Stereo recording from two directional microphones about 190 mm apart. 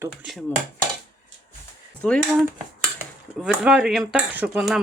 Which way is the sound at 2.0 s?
5° left (ahead or behind).